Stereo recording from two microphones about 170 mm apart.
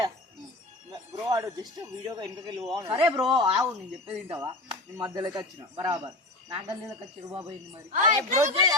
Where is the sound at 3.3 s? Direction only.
30° right (ahead or behind).